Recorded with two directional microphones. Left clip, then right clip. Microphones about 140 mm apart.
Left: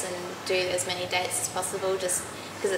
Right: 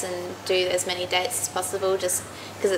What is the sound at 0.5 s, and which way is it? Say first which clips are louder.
A woman's voice: right 4 dB; 60° right (ahead or behind).